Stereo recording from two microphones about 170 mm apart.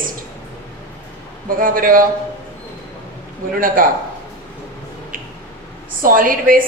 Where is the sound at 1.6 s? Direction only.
55° right (ahead or behind).